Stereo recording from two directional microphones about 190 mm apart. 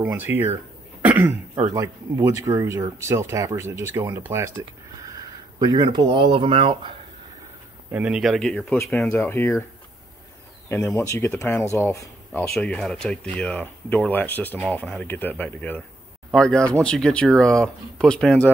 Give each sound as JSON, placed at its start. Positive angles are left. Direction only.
{"t": 0.0, "sound": "speech", "side_deg": -10}
{"t": 1.0, "sound": "throat clearing", "side_deg": -15}
{"t": 1.7, "sound": "speech", "side_deg": -15}
{"t": 7.9, "sound": "speech", "side_deg": -5}
{"t": 10.7, "sound": "speech", "side_deg": 15}
{"t": 12.3, "sound": "speech", "side_deg": 0}